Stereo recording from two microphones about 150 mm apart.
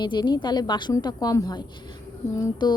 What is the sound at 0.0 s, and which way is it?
A woman's voice, 30° left (ahead or behind).